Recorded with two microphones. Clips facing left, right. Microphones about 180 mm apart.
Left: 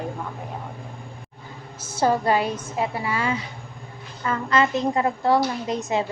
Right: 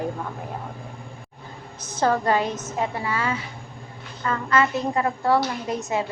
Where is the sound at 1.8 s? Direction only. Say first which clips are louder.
Left 1 dB; 10° left (ahead or behind).